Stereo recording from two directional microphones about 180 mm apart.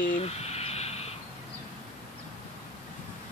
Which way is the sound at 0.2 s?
35° left (ahead or behind).